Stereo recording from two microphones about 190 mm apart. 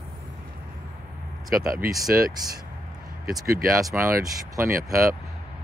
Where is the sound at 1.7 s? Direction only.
20° right (ahead or behind).